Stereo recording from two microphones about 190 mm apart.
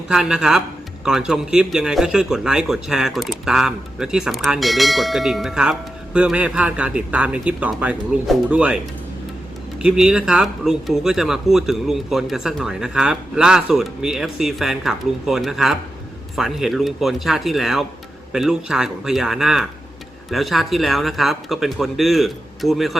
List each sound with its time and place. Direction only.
0.1 s speech: 5° right (ahead or behind)